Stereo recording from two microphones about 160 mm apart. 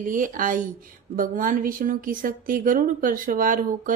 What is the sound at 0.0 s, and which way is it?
Speech, 55° right (ahead or behind).